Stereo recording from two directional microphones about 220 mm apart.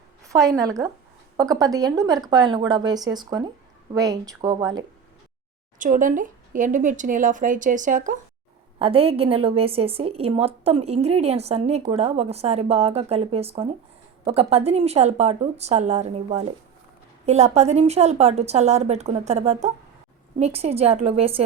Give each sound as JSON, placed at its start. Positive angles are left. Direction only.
{"t": 0.2, "sound": "a woman's voice", "side_deg": -15}
{"t": 5.8, "sound": "a woman's voice", "side_deg": -35}
{"t": 8.8, "sound": "a woman's voice", "side_deg": -25}